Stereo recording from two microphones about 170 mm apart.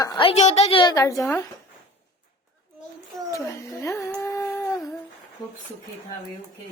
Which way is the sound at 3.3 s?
20° left (ahead or behind).